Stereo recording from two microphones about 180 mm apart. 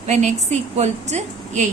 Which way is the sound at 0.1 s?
40° right (ahead or behind).